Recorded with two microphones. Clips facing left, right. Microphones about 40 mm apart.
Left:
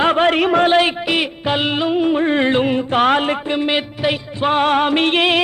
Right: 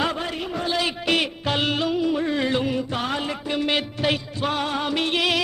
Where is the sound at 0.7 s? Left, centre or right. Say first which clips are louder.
Left 10 dB; left.